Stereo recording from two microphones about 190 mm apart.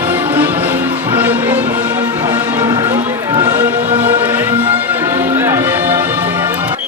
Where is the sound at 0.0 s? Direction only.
10° right (ahead or behind).